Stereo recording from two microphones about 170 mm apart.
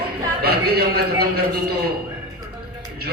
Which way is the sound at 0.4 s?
65° right (ahead or behind).